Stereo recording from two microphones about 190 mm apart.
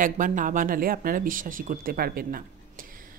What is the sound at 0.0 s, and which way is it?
Speech, 45° right (ahead or behind).